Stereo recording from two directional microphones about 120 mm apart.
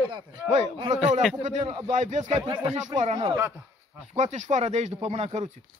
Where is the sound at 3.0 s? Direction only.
65° right (ahead or behind).